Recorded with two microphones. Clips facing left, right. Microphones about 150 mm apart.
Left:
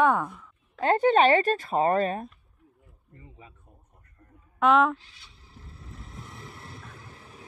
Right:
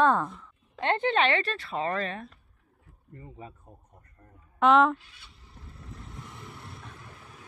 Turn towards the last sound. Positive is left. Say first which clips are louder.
# left 1 dB
turn(degrees=0)  # may be behind; listen again after turning